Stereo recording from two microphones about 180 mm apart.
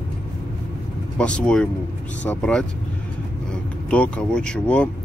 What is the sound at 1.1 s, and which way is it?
Speech, 5° left (ahead or behind).